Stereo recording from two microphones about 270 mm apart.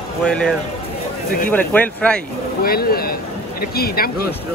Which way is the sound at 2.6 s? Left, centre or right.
Left.